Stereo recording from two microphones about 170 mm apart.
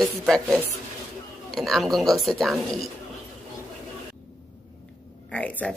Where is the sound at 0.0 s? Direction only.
Centre (ahead or behind).